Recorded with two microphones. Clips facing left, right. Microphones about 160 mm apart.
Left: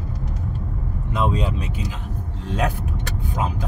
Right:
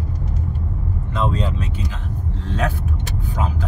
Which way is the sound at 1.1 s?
10° left (ahead or behind).